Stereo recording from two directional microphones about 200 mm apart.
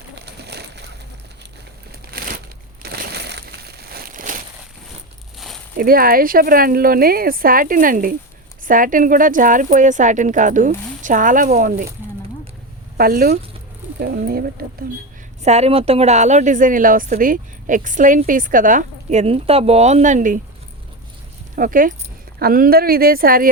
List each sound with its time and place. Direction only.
0.2 s splash: 55° right (ahead or behind)
2.8 s crumpling: 55° right (ahead or behind)
5.7 s a woman's voice: 45° right (ahead or behind)
13.0 s speech: 50° right (ahead or behind)
15.4 s a woman's voice: 30° right (ahead or behind)
21.5 s speech: 45° right (ahead or behind)